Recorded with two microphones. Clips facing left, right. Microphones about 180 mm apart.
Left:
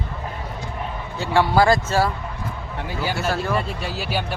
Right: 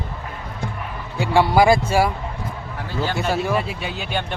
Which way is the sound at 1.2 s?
15° right (ahead or behind).